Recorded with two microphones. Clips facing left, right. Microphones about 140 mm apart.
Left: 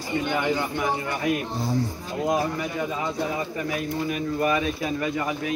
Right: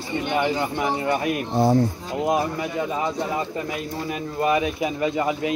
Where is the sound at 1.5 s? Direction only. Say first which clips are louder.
Right 8 dB; 60° right (ahead or behind).